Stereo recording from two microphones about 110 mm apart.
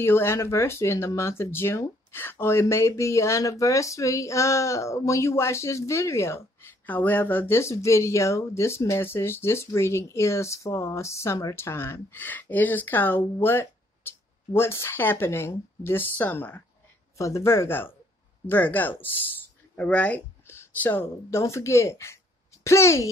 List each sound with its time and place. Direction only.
0.0 s speech: 20° left (ahead or behind)
17.2 s speech: 25° left (ahead or behind)